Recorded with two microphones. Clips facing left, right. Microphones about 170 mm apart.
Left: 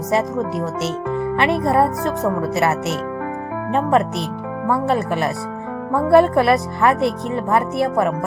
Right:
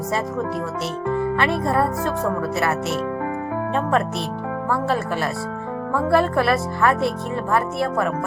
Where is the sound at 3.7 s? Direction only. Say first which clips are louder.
Left 5 dB; 15° left (ahead or behind).